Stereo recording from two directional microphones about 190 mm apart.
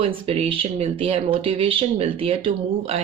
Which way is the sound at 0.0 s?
30° right (ahead or behind).